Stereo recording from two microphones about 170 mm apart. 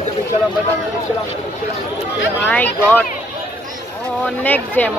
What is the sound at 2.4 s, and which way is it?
Speech, 10° left (ahead or behind).